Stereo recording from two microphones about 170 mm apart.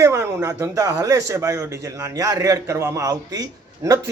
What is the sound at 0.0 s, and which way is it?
Speech, 15° right (ahead or behind).